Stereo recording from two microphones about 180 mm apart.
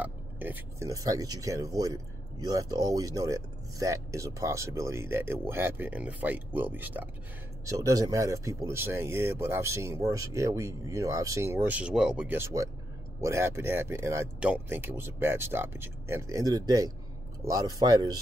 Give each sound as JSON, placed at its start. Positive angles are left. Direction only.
{"t": 0.0, "sound": "speech", "side_deg": -10}